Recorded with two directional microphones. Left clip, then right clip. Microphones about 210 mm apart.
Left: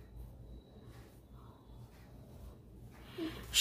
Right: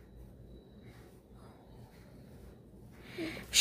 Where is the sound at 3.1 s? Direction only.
20° right (ahead or behind).